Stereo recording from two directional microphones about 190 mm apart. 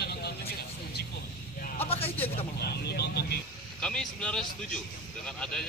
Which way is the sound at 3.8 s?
5° left (ahead or behind).